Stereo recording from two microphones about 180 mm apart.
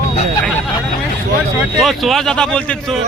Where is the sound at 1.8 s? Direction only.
Centre (ahead or behind).